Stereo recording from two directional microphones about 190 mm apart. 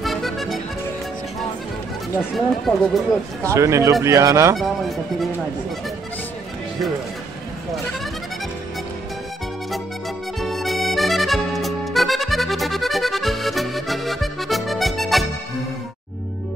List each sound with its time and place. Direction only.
0.0 s music: centre (ahead or behind)
2.1 s speech: centre (ahead or behind)
3.4 s speech: 15° right (ahead or behind)
4.6 s speech: centre (ahead or behind)
10.4 s music: centre (ahead or behind)